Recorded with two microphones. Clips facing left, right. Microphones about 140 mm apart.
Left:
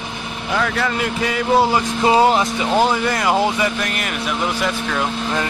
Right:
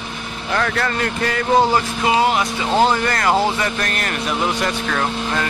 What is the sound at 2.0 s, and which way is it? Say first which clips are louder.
Speech: left 4 dB; 30° left (ahead or behind).